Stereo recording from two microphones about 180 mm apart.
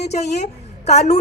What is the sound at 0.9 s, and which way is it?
Speech, 40° left (ahead or behind).